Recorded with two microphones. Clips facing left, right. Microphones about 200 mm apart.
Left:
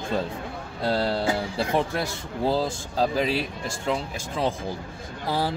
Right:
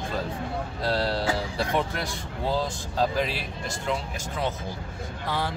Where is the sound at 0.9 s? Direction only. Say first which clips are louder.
Left 2 dB; 25° left (ahead or behind).